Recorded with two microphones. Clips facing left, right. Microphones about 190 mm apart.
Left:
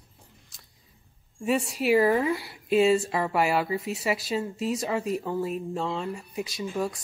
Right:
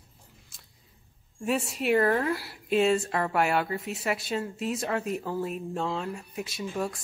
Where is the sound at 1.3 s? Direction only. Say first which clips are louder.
Left 2 dB; centre (ahead or behind).